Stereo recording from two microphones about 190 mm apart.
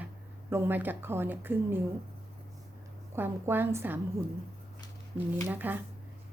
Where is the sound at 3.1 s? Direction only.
10° right (ahead or behind).